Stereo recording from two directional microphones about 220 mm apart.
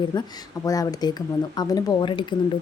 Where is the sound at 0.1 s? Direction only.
20° left (ahead or behind).